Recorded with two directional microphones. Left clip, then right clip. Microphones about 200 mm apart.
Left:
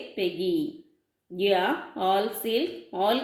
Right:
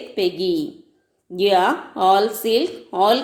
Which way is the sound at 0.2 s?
20° right (ahead or behind).